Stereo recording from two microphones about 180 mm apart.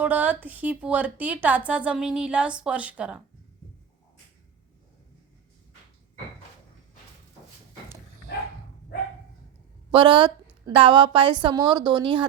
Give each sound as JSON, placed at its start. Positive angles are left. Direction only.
{"t": 0.0, "sound": "a woman's voice", "side_deg": -10}
{"t": 9.9, "sound": "a woman's voice", "side_deg": -30}